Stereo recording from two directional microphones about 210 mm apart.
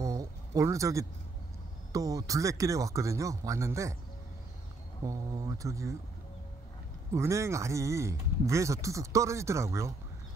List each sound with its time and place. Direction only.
0.0 s a sound: 15° right (ahead or behind)
1.9 s speech: 15° right (ahead or behind)
5.0 s speech: 15° right (ahead or behind)
7.2 s speech: 15° right (ahead or behind)